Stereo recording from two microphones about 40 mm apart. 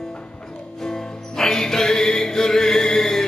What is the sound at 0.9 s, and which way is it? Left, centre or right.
Music, centre.